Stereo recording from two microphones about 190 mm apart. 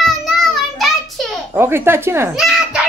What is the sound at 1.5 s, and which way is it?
Speech, 10° right (ahead or behind).